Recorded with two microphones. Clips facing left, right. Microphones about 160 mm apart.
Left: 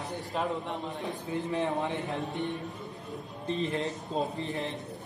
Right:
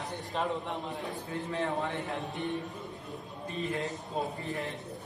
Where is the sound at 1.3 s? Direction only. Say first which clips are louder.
Left 3 dB; 20° left (ahead or behind).